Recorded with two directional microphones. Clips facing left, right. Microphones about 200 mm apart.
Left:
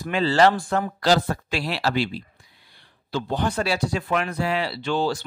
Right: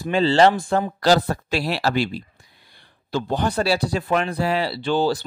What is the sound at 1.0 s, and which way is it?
Speech, 40° right (ahead or behind).